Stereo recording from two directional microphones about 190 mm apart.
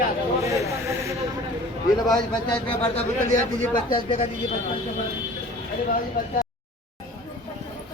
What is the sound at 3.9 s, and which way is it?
Speech, 30° left (ahead or behind).